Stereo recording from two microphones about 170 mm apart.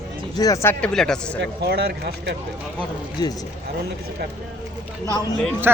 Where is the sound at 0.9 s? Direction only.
5° left (ahead or behind).